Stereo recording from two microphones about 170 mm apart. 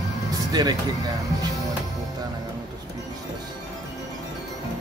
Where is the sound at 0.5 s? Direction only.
25° right (ahead or behind).